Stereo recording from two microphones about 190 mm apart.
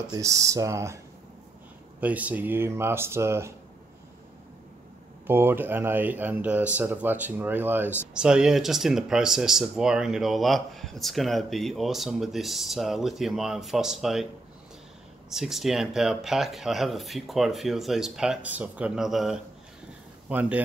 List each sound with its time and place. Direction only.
0.1 s speech: 15° right (ahead or behind)
2.0 s speech: 10° right (ahead or behind)
5.2 s speech: 10° right (ahead or behind)
15.3 s speech: centre (ahead or behind)